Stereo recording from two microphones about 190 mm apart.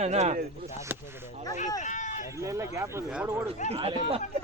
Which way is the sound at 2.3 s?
15° right (ahead or behind).